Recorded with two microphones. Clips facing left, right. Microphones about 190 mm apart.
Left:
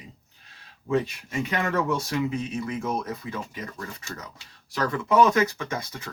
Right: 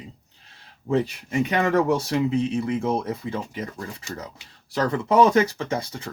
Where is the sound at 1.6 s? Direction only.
35° right (ahead or behind).